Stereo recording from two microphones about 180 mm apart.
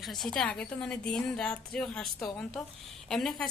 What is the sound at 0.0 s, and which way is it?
A woman's voice, centre (ahead or behind).